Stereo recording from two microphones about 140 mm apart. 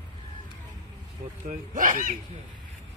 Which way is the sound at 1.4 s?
70° right (ahead or behind).